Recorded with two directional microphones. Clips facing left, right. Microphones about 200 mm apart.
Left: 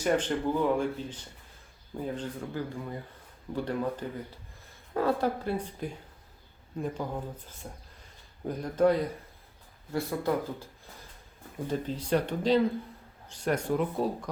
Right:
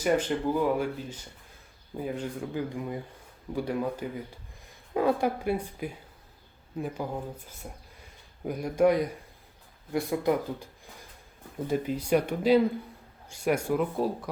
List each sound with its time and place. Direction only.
0.0 s speech: 10° right (ahead or behind)
2.0 s speech: 10° right (ahead or behind)
11.7 s speech: 10° right (ahead or behind)